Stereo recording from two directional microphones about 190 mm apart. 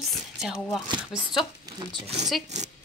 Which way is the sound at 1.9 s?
30° right (ahead or behind).